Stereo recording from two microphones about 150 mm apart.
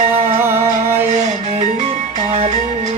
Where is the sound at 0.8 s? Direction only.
15° right (ahead or behind).